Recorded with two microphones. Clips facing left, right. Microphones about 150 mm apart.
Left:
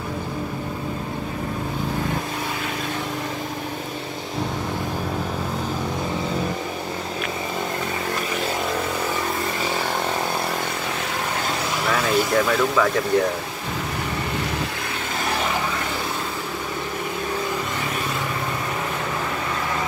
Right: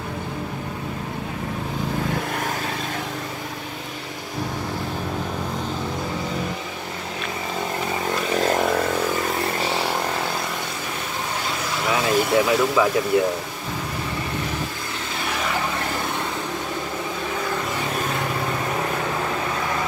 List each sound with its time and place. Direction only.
11.9 s speech: 10° right (ahead or behind)